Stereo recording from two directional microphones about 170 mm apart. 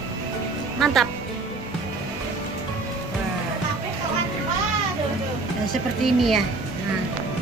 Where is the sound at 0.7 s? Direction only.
Centre (ahead or behind).